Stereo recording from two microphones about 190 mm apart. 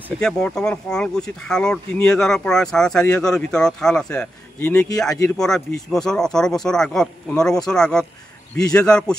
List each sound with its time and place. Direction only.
0.2 s speech: 5° left (ahead or behind)